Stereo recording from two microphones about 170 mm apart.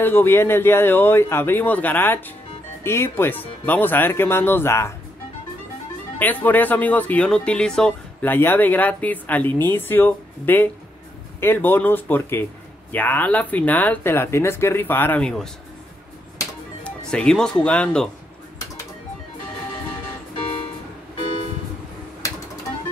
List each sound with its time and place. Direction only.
0.0 s speech: 15° left (ahead or behind)
6.1 s speech: 10° left (ahead or behind)
16.8 s speech: 5° left (ahead or behind)